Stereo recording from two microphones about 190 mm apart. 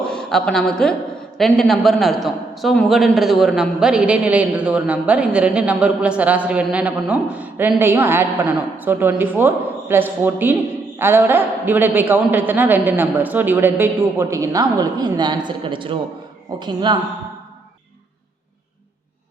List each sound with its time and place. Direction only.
0.1 s a woman's voice: 5° left (ahead or behind); by 17.0 s 25° right (ahead or behind)